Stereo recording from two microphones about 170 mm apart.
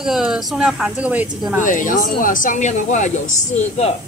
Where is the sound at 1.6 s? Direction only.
50° left (ahead or behind).